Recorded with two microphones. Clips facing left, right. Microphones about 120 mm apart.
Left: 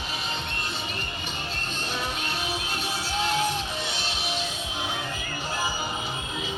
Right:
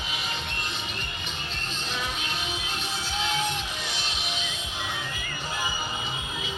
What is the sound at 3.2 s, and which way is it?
Music, 40° left (ahead or behind).